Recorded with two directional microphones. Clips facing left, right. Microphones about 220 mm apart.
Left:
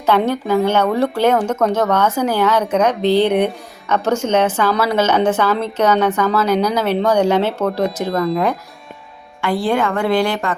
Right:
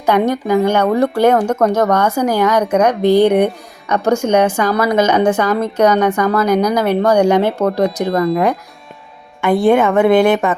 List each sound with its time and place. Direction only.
0.0 s speech: 15° right (ahead or behind)
9.4 s a woman's voice: 20° right (ahead or behind)